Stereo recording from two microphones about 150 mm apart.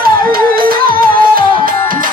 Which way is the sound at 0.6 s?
75° right (ahead or behind).